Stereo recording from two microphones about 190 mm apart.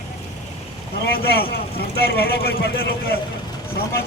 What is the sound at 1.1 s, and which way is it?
A man's voice, 55° left (ahead or behind).